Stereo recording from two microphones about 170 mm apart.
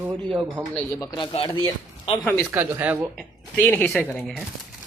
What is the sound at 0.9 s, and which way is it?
Speech, 20° left (ahead or behind).